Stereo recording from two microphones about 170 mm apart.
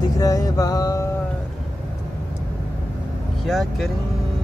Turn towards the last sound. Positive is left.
turn(degrees=0)  # may be behind; listen again after turning